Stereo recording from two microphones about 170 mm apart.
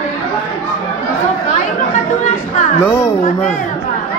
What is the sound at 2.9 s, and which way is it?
Speech, 15° left (ahead or behind).